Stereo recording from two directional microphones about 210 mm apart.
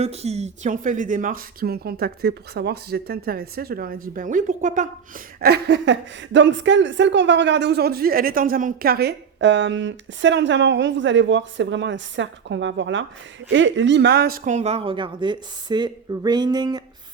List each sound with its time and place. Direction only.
0.0 s speech: 30° right (ahead or behind)
5.4 s a woman's voice: 50° right (ahead or behind); by 16.8 s 20° right (ahead or behind)